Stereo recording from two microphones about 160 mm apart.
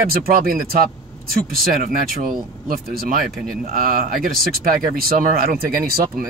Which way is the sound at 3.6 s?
60° right (ahead or behind).